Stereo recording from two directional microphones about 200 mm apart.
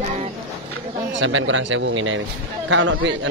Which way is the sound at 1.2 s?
70° right (ahead or behind).